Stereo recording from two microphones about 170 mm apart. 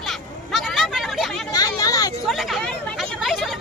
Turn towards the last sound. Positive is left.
turn(degrees=0)  # may be behind; listen again after turning